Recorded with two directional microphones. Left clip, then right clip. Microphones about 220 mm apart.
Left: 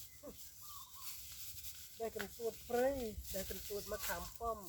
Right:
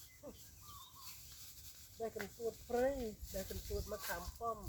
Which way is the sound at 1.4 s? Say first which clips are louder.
Left 4 dB; 35° left (ahead or behind).